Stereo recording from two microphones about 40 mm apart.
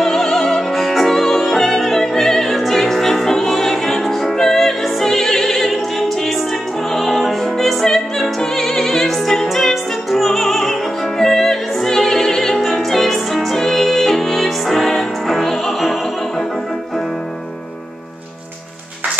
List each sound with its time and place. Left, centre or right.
0.0 s opera: centre